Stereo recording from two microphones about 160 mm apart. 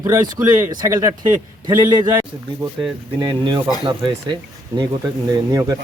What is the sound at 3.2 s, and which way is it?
A man's voice, 25° right (ahead or behind).